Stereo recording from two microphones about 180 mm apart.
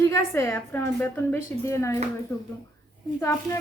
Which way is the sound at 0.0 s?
15° left (ahead or behind).